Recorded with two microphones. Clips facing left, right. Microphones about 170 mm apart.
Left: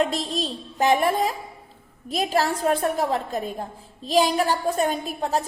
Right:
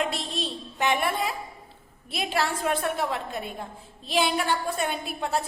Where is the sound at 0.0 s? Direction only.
40° left (ahead or behind).